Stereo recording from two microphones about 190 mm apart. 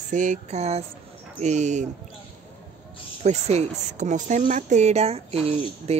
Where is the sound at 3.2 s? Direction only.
35° right (ahead or behind).